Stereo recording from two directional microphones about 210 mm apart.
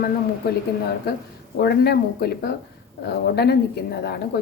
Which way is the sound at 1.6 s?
50° left (ahead or behind).